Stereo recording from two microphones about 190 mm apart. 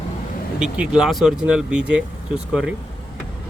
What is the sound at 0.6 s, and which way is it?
Speech, 5° right (ahead or behind).